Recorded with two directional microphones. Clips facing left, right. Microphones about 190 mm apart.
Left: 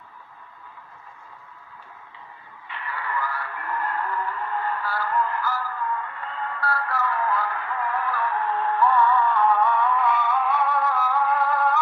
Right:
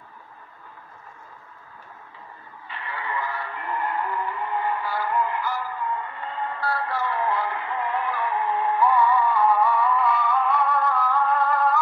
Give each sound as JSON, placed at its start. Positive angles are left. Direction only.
{"t": 2.9, "sound": "music", "side_deg": -25}